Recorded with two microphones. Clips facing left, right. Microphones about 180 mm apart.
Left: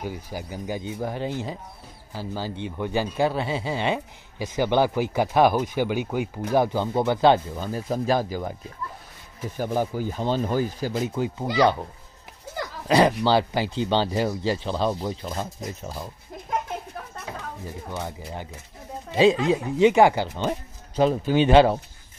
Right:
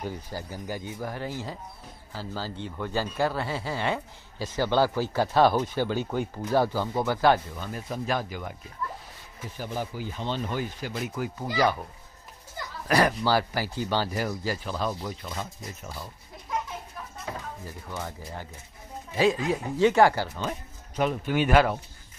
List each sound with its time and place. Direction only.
0.0 s speech: 10° left (ahead or behind)
6.5 s speech: 20° left (ahead or behind); by 8.5 s 35° left (ahead or behind)
9.6 s speech: 50° left (ahead or behind)
11.0 s speech: 25° left (ahead or behind)
12.8 s speech: 20° left (ahead or behind); by 16.1 s 35° left (ahead or behind)
16.4 s a sound: 55° left (ahead or behind)
17.6 s speech: 20° left (ahead or behind)
19.5 s speech: 15° left (ahead or behind)